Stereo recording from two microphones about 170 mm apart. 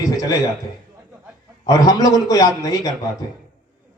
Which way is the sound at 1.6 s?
20° left (ahead or behind).